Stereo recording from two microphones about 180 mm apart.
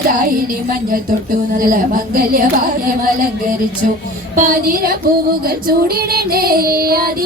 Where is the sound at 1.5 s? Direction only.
50° right (ahead or behind).